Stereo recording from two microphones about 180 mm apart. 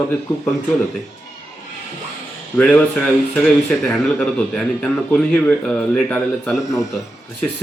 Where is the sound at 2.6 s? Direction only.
5° left (ahead or behind).